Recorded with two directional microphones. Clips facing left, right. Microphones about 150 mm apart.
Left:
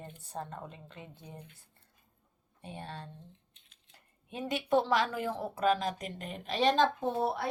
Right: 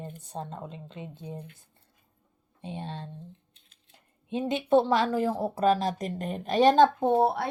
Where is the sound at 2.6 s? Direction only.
20° right (ahead or behind).